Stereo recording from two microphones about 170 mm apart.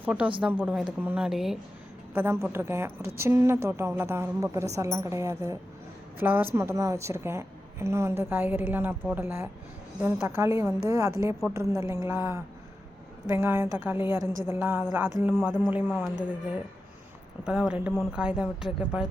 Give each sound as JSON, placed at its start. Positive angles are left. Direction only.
{"t": 0.0, "sound": "a woman's voice", "side_deg": -5}
{"t": 2.1, "sound": "a woman's voice", "side_deg": -15}